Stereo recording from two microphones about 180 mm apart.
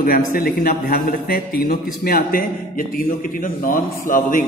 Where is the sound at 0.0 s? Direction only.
55° left (ahead or behind).